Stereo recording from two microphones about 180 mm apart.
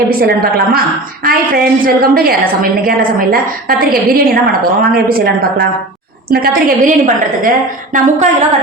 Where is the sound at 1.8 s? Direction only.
55° right (ahead or behind).